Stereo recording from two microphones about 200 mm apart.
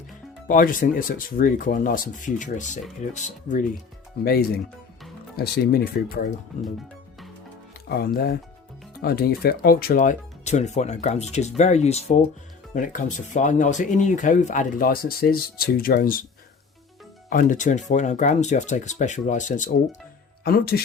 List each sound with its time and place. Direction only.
0.4 s speech: 45° left (ahead or behind)
4.2 s speech: 50° left (ahead or behind)
7.9 s speech: 50° left (ahead or behind)
17.2 s speech: 40° left (ahead or behind)
20.4 s speech: 50° left (ahead or behind)